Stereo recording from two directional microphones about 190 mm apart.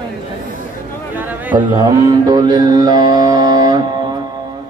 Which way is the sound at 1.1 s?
10° right (ahead or behind).